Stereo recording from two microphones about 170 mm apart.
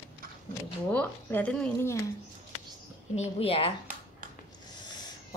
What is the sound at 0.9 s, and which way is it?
Speech, 10° left (ahead or behind).